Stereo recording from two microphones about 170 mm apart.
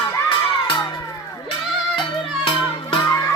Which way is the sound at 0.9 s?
20° left (ahead or behind).